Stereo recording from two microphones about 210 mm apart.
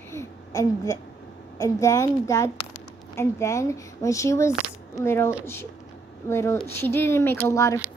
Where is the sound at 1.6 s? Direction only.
15° left (ahead or behind).